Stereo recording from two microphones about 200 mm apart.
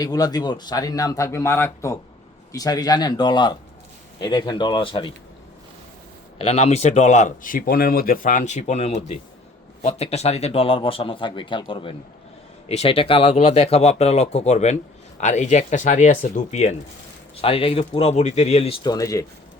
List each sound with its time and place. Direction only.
0.0 s a man's voice: 20° left (ahead or behind)
6.4 s speech: 35° left (ahead or behind); by 19.2 s 15° left (ahead or behind)